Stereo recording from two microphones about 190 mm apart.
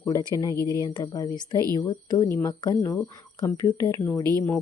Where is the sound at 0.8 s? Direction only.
20° left (ahead or behind).